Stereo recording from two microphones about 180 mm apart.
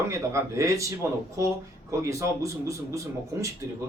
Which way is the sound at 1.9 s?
15° right (ahead or behind).